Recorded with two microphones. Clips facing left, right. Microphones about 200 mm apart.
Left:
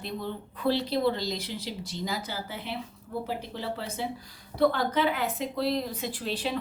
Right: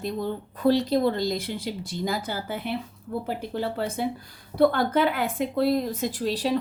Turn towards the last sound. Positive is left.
turn(degrees=-40)  # may be behind; listen again after turning